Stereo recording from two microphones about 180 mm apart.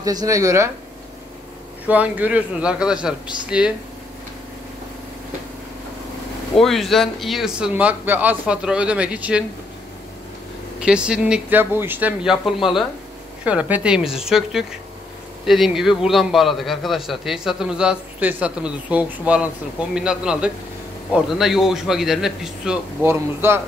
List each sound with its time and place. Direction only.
0.0 s speech: 20° right (ahead or behind)
1.9 s a man's voice: 10° right (ahead or behind)
6.5 s a man's voice: centre (ahead or behind)
10.8 s a man's voice: 5° right (ahead or behind)
23.0 s speech: 15° right (ahead or behind)